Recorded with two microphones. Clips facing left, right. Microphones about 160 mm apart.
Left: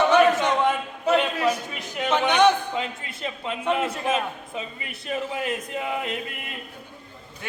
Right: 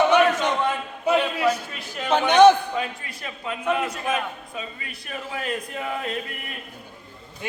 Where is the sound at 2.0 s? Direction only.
35° right (ahead or behind).